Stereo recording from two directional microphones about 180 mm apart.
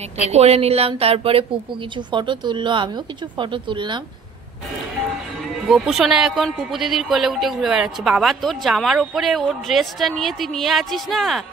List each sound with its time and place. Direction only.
0.3 s speech: 35° right (ahead or behind)
5.7 s speech: centre (ahead or behind)